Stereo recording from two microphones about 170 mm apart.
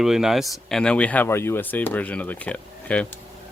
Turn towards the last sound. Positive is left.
turn(degrees=10)  # may be behind; listen again after turning